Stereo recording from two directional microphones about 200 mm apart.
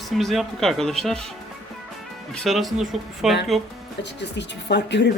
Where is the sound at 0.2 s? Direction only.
Centre (ahead or behind).